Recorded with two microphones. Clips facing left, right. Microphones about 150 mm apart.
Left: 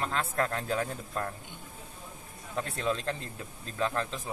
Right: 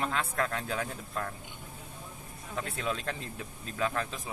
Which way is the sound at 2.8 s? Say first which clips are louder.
Left 4 dB; 30° left (ahead or behind).